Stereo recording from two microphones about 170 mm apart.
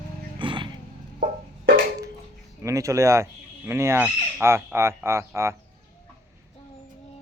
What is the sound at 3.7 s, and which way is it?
Fowl, 15° right (ahead or behind).